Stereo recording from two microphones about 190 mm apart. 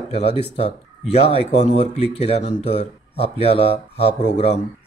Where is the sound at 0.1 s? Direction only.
35° left (ahead or behind).